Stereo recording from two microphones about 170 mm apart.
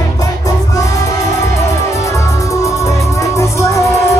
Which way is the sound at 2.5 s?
20° left (ahead or behind).